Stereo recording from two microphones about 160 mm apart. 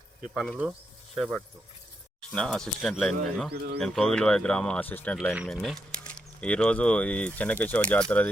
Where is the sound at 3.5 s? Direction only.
90° right.